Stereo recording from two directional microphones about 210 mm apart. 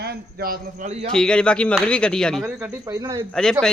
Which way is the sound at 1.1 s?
5° left (ahead or behind).